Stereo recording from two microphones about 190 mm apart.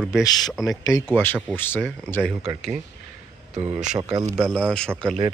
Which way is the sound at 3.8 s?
35° right (ahead or behind).